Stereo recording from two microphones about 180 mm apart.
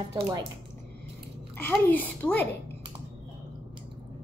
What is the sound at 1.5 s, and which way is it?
Speech, 10° left (ahead or behind).